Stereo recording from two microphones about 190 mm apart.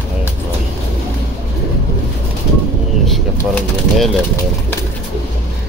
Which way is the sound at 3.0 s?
Centre (ahead or behind).